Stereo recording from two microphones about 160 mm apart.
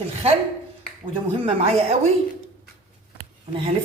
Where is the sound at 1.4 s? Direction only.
40° right (ahead or behind).